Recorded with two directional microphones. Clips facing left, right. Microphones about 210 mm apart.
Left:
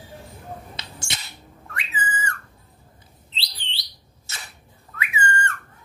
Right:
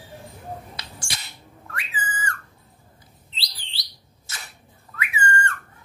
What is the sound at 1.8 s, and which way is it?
Whistle, 25° left (ahead or behind).